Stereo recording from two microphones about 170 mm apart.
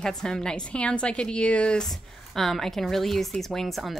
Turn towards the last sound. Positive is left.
turn(degrees=0)  # may be behind; listen again after turning